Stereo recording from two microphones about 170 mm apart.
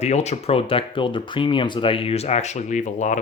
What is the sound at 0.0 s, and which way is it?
Speech, 40° left (ahead or behind).